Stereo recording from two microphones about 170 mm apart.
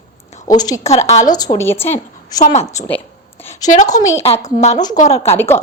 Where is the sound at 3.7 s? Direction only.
45° left (ahead or behind).